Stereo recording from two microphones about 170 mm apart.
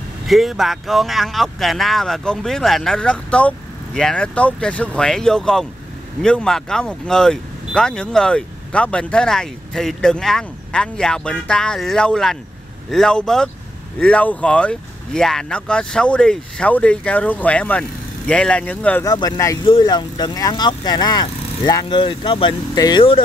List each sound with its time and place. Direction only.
0.3 s speech: centre (ahead or behind)
19.0 s speech: 20° left (ahead or behind)